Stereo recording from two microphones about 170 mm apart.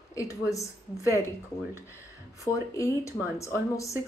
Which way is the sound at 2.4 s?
15° left (ahead or behind).